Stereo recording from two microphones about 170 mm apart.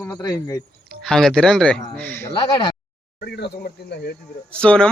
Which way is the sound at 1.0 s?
5° left (ahead or behind).